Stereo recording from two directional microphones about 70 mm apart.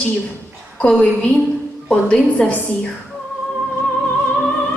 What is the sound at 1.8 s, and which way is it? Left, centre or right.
Speech, centre.